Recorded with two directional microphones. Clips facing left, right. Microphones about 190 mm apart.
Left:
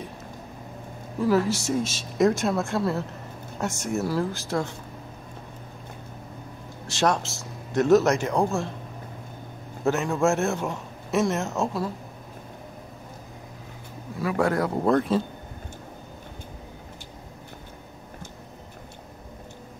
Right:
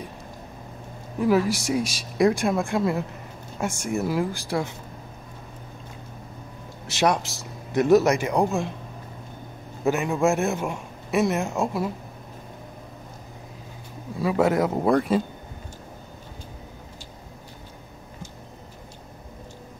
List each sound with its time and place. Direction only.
1.2 s speech: 15° right (ahead or behind)
3.6 s speech: centre (ahead or behind)
4.0 s speech: 15° right (ahead or behind)
6.9 s speech: 15° right (ahead or behind)
9.8 s speech: 15° right (ahead or behind)
14.2 s speech: 20° right (ahead or behind)